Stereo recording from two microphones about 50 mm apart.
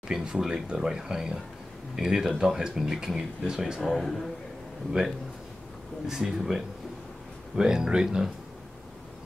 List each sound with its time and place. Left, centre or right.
0.1 s speech: centre
3.9 s a man's voice: centre
5.0 s a man's voice: centre
6.0 s speech: centre